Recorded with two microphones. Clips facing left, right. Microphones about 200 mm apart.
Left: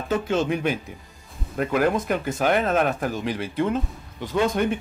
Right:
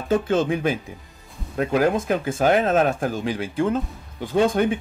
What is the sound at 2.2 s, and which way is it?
Speech, 30° right (ahead or behind).